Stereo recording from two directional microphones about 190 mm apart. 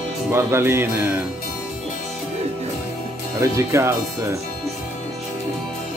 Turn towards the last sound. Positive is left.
turn(degrees=-15)  # may be behind; listen again after turning